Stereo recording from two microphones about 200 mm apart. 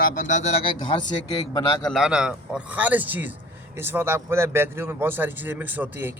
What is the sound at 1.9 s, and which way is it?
A man's voice, centre (ahead or behind).